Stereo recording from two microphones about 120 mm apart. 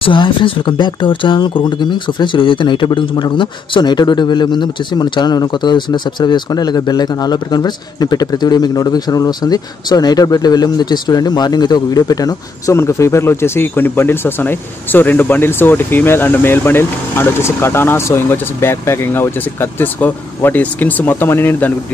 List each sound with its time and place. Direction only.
0.0 s speech: 45° left (ahead or behind); by 21.7 s 15° left (ahead or behind)